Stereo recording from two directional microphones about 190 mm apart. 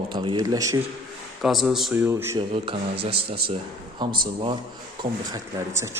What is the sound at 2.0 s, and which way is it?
Speech, 10° right (ahead or behind).